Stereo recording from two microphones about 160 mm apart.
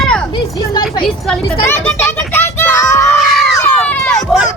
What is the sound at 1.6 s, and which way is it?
Children playing, 15° left (ahead or behind).